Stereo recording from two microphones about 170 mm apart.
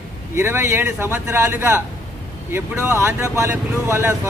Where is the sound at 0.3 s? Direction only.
15° right (ahead or behind).